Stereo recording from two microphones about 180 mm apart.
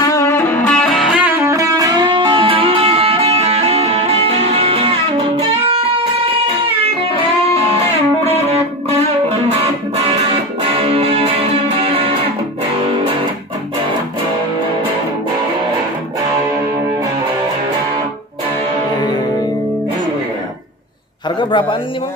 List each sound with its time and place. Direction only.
0.0 s music: 15° left (ahead or behind); by 4.9 s 30° right (ahead or behind)
6.4 s music: 30° right (ahead or behind)
8.5 s music: 35° right (ahead or behind)
21.4 s a sound: 25° left (ahead or behind)